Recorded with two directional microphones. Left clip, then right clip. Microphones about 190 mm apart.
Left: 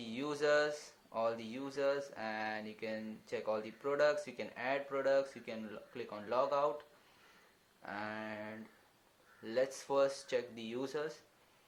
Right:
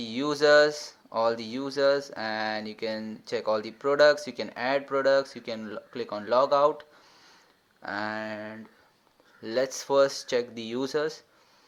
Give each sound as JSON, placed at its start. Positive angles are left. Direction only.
{"t": 0.0, "sound": "speech", "side_deg": -40}
{"t": 7.8, "sound": "speech", "side_deg": -40}